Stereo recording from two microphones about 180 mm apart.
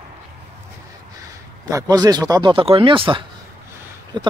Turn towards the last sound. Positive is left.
turn(degrees=-25)  # may be behind; listen again after turning